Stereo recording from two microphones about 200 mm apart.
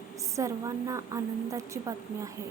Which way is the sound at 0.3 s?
15° right (ahead or behind).